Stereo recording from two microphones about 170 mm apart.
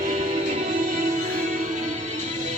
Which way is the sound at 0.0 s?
45° right (ahead or behind).